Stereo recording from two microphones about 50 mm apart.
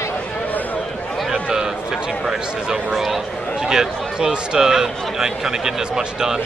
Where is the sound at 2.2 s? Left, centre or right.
Centre.